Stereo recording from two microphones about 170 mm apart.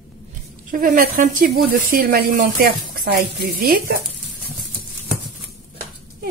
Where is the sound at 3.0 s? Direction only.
70° right (ahead or behind).